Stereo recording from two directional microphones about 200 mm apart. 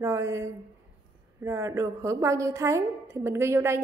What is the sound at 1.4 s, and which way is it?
A woman's voice, 15° right (ahead or behind).